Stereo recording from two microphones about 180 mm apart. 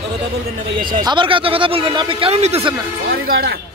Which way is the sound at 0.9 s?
25° right (ahead or behind).